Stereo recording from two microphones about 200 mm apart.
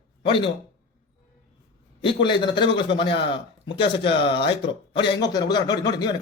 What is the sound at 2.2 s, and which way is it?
A man's voice, 25° left (ahead or behind).